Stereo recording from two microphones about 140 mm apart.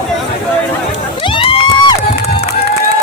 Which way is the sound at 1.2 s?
40° left (ahead or behind).